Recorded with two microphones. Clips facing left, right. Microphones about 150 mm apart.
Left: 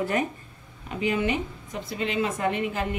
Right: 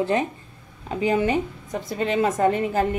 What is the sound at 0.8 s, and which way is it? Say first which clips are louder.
Speech: right 4 dB; 35° right (ahead or behind).